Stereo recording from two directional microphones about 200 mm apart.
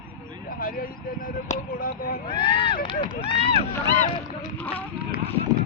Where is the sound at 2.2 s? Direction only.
25° left (ahead or behind).